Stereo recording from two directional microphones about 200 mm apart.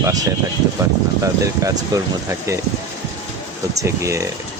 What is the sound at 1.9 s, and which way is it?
Speech, 15° right (ahead or behind).